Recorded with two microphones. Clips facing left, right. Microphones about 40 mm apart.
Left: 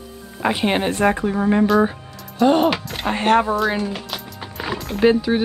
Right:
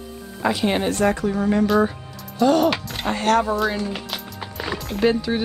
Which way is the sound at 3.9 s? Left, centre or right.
Centre.